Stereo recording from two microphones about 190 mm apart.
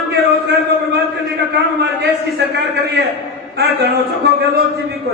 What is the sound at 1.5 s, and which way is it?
A man's voice, 60° right (ahead or behind).